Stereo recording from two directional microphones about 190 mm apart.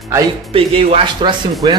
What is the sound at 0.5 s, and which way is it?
Speech, 30° right (ahead or behind).